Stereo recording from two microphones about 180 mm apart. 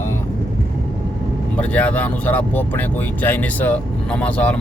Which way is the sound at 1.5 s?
5° left (ahead or behind).